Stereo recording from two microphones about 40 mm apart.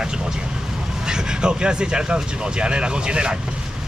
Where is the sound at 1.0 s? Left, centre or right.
Centre.